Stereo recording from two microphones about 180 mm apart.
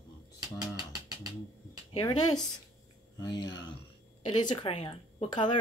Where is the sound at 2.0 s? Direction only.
25° left (ahead or behind).